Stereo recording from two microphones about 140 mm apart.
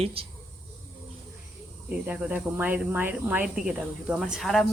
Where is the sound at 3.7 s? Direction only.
5° right (ahead or behind).